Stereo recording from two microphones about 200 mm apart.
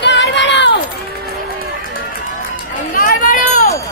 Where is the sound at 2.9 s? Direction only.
40° left (ahead or behind).